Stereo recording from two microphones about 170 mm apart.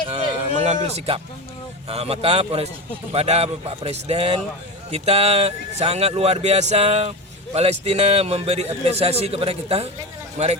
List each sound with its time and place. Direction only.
0.5 s a man's voice: 40° right (ahead or behind)